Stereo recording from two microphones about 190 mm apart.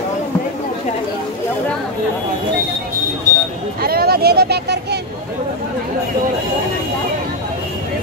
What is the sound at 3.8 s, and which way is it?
Vehicle, 55° right (ahead or behind).